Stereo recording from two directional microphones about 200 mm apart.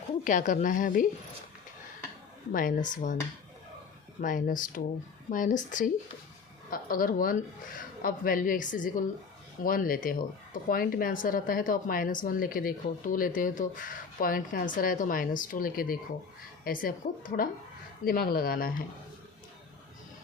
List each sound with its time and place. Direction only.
0.3 s a woman's voice: 40° left (ahead or behind)
2.5 s a woman's voice: 45° left (ahead or behind)
4.2 s a woman's voice: 40° left (ahead or behind)